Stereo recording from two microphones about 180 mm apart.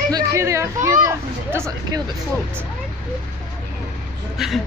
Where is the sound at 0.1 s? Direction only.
15° right (ahead or behind).